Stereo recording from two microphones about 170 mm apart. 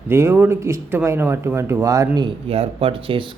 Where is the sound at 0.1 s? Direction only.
15° right (ahead or behind).